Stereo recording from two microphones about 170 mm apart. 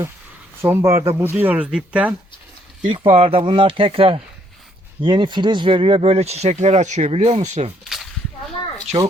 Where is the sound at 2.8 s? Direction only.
30° right (ahead or behind).